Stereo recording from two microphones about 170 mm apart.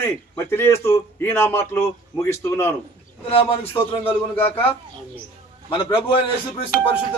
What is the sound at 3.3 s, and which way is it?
Speech, 30° left (ahead or behind).